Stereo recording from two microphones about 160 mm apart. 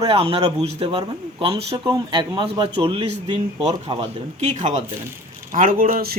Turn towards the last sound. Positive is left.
turn(degrees=-70)  # may be behind; listen again after turning